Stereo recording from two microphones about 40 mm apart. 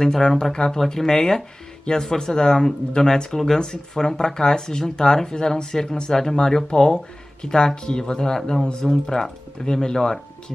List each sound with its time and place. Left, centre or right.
0.0 s speech: centre